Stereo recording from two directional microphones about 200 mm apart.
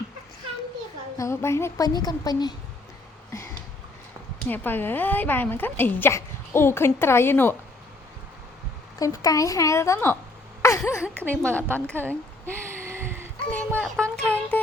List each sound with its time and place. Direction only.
1.2 s a woman's voice: 15° left (ahead or behind)
4.4 s a woman's voice: 10° left (ahead or behind)
9.0 s a woman's voice: 15° left (ahead or behind)
12.8 s a sound: 10° right (ahead or behind)
13.5 s a woman's voice: 5° left (ahead or behind)
14.5 s music: 10° left (ahead or behind)